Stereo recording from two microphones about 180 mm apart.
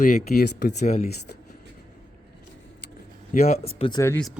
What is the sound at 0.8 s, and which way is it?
Speech, 50° left (ahead or behind).